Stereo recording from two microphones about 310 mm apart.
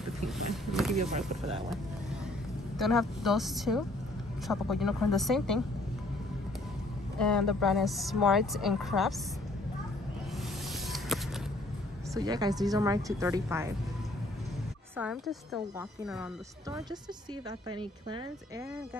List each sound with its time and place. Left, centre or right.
0.7 s vehicle: centre
0.9 s speech: right
2.8 s speech: centre
7.2 s speech: centre
12.1 s speech: centre
15.0 s speech: centre
17.5 s speech: centre